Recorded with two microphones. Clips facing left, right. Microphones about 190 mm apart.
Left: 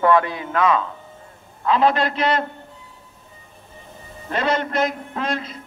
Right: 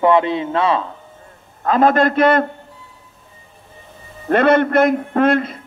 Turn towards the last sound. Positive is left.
turn(degrees=-55)  # may be behind; listen again after turning